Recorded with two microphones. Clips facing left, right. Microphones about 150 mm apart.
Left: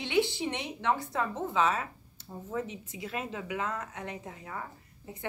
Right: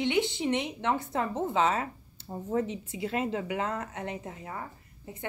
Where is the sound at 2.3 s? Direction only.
40° right (ahead or behind).